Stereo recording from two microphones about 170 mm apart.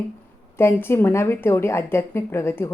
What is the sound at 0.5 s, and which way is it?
A woman's voice, 15° left (ahead or behind).